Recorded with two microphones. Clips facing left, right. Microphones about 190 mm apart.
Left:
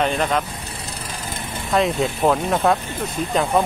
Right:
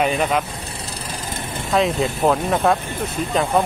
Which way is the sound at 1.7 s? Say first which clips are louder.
Even; centre (ahead or behind).